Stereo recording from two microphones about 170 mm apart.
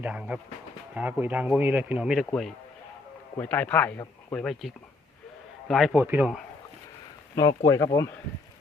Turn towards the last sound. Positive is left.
turn(degrees=20)  # may be behind; listen again after turning